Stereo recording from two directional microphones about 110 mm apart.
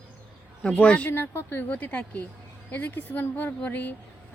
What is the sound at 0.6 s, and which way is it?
Speech, 10° left (ahead or behind).